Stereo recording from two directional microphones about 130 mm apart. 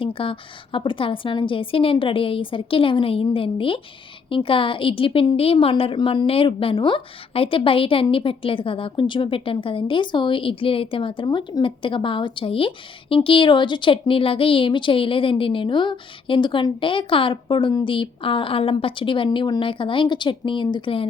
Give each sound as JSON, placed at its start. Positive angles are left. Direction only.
{"t": 0.0, "sound": "a woman's voice", "side_deg": 45}